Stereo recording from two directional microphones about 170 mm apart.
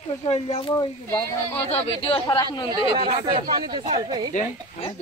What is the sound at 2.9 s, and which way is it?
Speech, 30° right (ahead or behind).